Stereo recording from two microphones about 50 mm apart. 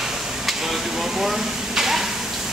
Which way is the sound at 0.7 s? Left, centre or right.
Centre.